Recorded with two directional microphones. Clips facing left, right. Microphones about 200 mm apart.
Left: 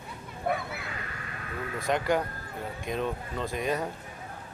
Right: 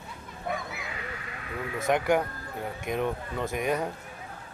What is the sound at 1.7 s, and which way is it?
Speech, 20° right (ahead or behind).